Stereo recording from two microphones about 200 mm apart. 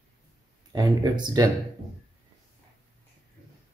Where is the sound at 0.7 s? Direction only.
20° right (ahead or behind).